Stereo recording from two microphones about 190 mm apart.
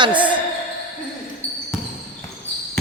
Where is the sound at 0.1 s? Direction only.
10° right (ahead or behind).